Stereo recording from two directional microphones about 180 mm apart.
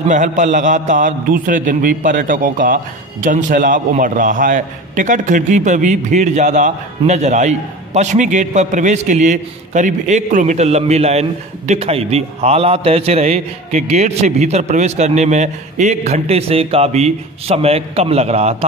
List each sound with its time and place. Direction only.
0.1 s a man's voice: 45° right (ahead or behind)